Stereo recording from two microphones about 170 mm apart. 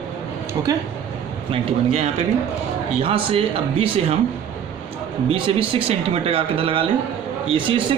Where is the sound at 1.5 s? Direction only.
35° right (ahead or behind).